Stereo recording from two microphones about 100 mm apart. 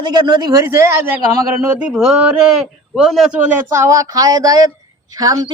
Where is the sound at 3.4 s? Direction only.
25° right (ahead or behind).